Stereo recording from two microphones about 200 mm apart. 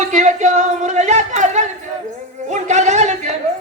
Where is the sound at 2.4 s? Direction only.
35° right (ahead or behind).